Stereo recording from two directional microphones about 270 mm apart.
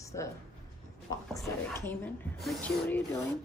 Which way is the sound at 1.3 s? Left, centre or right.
Centre.